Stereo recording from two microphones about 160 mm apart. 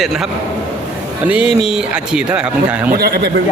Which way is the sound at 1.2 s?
10° right (ahead or behind).